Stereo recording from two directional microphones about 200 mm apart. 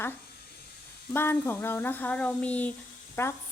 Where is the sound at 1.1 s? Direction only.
10° left (ahead or behind).